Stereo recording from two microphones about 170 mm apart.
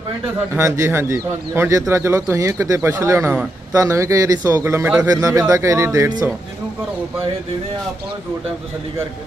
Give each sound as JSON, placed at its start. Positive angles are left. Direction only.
{"t": 0.6, "sound": "speech", "side_deg": -15}